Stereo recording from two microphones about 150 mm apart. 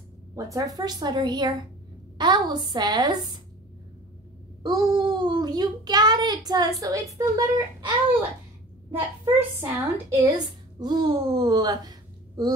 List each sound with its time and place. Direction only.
0.3 s a woman's voice: 25° right (ahead or behind)
4.6 s a child's voice: 30° right (ahead or behind)
9.2 s a woman's voice: 25° right (ahead or behind)